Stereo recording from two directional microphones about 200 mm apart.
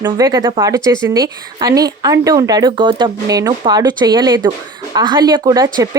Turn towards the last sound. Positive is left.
turn(degrees=-20)  # may be behind; listen again after turning